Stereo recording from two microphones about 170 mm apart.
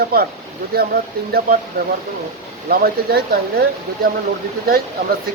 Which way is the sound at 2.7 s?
65° right (ahead or behind).